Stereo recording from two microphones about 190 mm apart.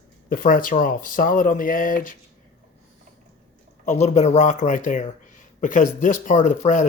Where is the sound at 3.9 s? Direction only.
35° left (ahead or behind).